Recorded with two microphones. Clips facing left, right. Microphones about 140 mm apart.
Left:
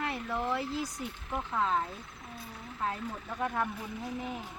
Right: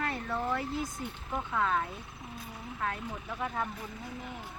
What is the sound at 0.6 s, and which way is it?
Speech, 25° right (ahead or behind).